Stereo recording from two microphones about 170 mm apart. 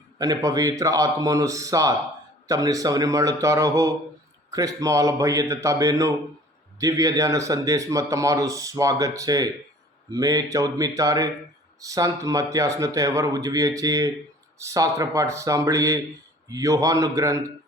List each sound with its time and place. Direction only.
0.2 s a man's voice: 20° right (ahead or behind)